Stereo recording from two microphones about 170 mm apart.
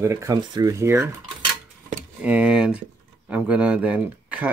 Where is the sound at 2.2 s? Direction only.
5° right (ahead or behind).